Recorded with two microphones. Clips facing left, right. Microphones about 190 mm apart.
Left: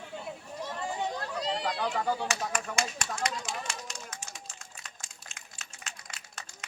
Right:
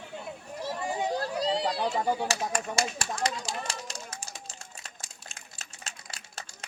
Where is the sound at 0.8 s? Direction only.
10° right (ahead or behind).